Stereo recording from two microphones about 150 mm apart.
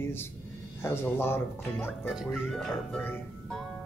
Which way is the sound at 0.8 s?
15° left (ahead or behind).